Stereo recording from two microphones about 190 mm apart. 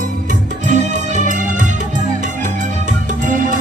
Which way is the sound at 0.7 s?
40° right (ahead or behind).